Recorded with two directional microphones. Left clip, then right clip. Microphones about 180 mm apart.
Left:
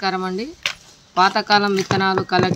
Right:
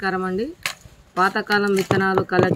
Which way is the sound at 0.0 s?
Centre (ahead or behind).